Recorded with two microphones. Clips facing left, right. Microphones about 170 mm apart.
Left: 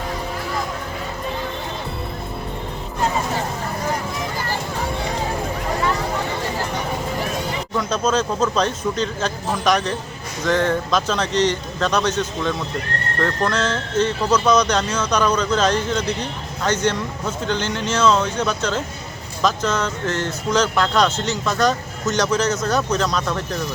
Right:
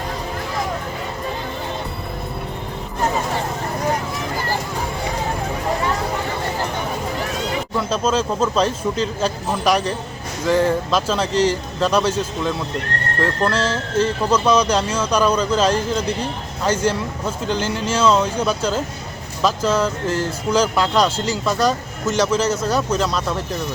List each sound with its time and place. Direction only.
7.8 s speech: 5° right (ahead or behind)